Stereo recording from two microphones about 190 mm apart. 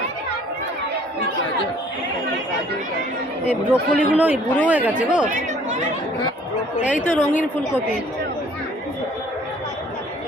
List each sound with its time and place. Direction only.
3.4 s speech: 5° right (ahead or behind)
5.3 s chatter: 40° right (ahead or behind)
7.0 s a woman's voice: 10° left (ahead or behind)